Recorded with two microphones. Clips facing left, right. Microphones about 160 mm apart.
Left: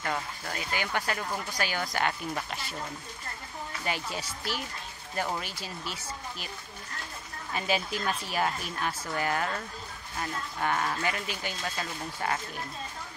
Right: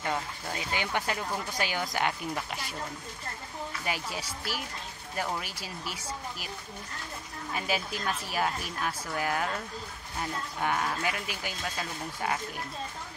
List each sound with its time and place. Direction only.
0.0 s speech: 15° right (ahead or behind)
3.8 s speech: 5° right (ahead or behind)
7.5 s a woman's voice: 5° right (ahead or behind)